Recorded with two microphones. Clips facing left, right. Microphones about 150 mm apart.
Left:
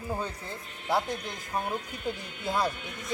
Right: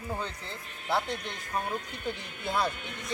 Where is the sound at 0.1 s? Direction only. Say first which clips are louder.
Left 2 dB; 10° left (ahead or behind).